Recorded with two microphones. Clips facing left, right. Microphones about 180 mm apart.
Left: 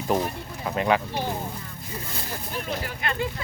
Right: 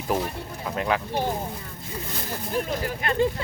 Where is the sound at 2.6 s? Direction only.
40° right (ahead or behind).